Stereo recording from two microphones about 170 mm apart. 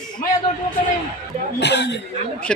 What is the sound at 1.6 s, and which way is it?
Speech, 90° left.